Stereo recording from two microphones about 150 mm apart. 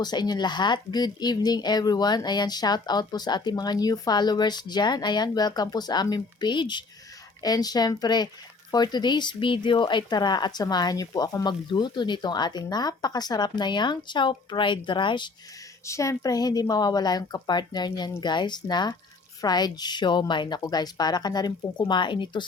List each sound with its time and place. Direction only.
0.0 s speech: 30° left (ahead or behind)
15.9 s speech: 20° left (ahead or behind)